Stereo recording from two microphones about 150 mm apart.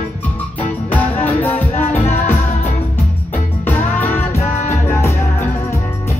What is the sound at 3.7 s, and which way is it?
Music, 15° left (ahead or behind).